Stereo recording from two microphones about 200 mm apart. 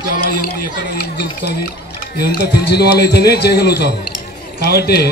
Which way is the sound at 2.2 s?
55° left (ahead or behind).